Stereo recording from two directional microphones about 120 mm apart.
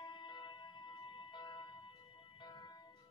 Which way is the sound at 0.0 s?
40° left (ahead or behind).